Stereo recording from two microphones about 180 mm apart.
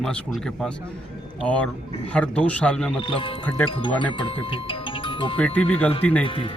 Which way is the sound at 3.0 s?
30° left (ahead or behind).